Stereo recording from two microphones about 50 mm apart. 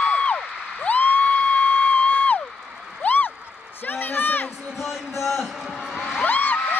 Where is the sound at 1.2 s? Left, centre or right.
Left.